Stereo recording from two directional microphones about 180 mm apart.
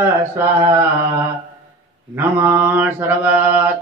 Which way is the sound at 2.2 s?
10° right (ahead or behind).